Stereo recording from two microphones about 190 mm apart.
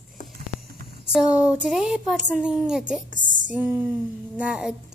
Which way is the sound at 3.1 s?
45° right (ahead or behind).